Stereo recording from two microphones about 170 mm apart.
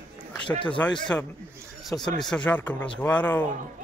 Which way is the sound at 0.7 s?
10° left (ahead or behind).